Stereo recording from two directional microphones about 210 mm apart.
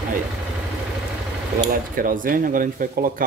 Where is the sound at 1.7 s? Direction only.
40° right (ahead or behind).